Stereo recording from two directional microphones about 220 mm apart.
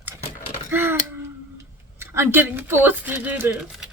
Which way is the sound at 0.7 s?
10° right (ahead or behind).